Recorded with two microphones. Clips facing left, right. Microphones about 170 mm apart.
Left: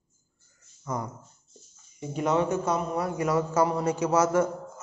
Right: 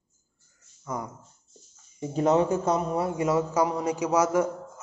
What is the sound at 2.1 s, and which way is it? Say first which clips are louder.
Speech: right 3 dB; 35° right (ahead or behind).